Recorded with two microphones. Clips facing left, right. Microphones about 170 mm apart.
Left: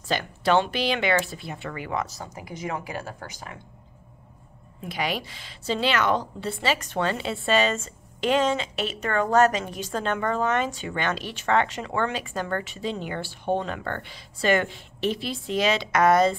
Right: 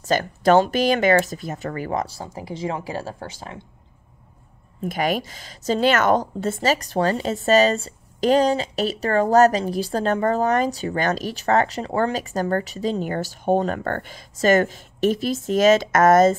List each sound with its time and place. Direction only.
0.0 s speech: 45° right (ahead or behind); by 3.6 s 30° right (ahead or behind)
4.8 s speech: 45° right (ahead or behind)